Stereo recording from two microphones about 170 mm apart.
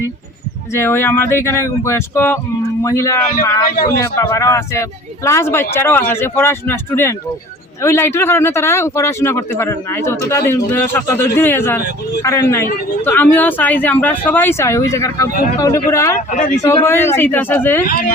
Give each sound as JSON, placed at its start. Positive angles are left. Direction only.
{"t": 0.7, "sound": "speech", "side_deg": 15}
{"t": 3.7, "sound": "a man's voice", "side_deg": 60}
{"t": 3.9, "sound": "speech", "side_deg": 15}
{"t": 16.3, "sound": "speech", "side_deg": 45}
{"t": 16.6, "sound": "speech", "side_deg": 15}